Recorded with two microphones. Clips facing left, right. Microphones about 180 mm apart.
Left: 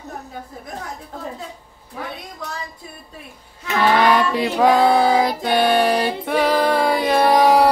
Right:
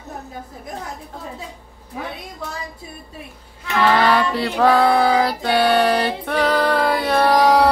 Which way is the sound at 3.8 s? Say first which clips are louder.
Left 1 dB; 10° left (ahead or behind).